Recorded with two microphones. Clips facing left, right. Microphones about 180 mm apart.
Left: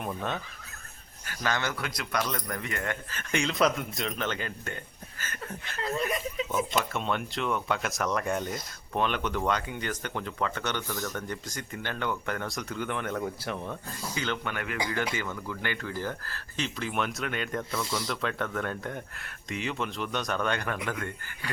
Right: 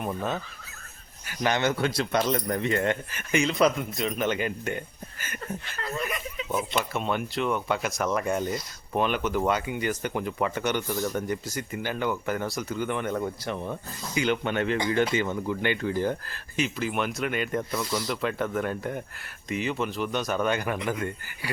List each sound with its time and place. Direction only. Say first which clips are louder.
0.0 s speech: right 3 dB; 5° right (ahead or behind)
1.4 s speech: right 6 dB; 20° right (ahead or behind)
3.1 s speech: right 4 dB; 5° right (ahead or behind)
4.3 s speech: right 7 dB; 15° right (ahead or behind)
6.0 s speech: left 2 dB; 35° left (ahead or behind)
6.9 s speech: right 3 dB; 5° right (ahead or behind)
14.1 s speech: right 7 dB; 10° right (ahead or behind)
14.4 s speech: right 7 dB; 25° right (ahead or behind); by 21.5 s 10° right (ahead or behind)